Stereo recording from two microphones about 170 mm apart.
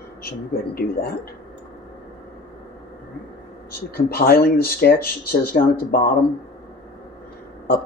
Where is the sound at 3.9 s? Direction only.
65° left (ahead or behind).